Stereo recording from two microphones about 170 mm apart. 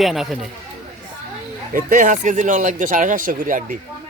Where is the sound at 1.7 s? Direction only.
50° right (ahead or behind).